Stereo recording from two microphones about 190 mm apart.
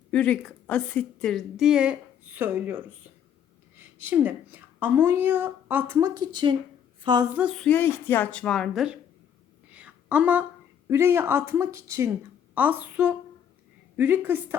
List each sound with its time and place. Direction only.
0.1 s a woman's voice: 5° left (ahead or behind); by 6.1 s 10° right (ahead or behind)
6.1 s speech: 25° right (ahead or behind)
7.3 s a woman's voice: 5° right (ahead or behind)
9.7 s a sound: 5° right (ahead or behind)
10.8 s speech: 15° right (ahead or behind)